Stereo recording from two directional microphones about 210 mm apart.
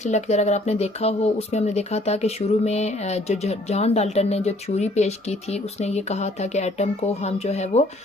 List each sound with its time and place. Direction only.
0.1 s speech: 30° left (ahead or behind)